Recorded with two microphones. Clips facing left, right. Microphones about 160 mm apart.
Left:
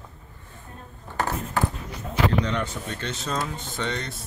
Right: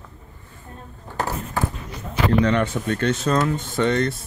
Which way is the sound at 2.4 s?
60° right (ahead or behind).